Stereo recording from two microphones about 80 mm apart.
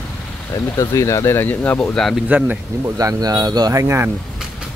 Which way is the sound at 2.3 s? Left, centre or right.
Right.